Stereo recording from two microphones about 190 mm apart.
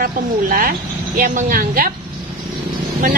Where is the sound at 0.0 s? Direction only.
50° right (ahead or behind).